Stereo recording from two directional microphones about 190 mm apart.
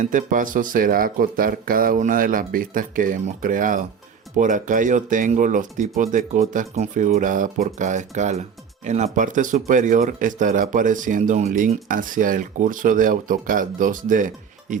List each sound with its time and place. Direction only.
0.0 s speech: 45° right (ahead or behind)